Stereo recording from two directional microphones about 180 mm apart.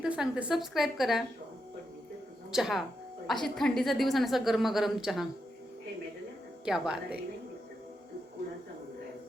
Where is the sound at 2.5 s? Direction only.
Centre (ahead or behind).